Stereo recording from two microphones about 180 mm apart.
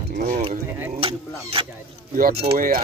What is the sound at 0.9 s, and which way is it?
Speech, 30° right (ahead or behind).